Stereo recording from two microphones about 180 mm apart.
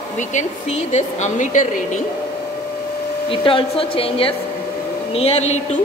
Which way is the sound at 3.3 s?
30° left (ahead or behind).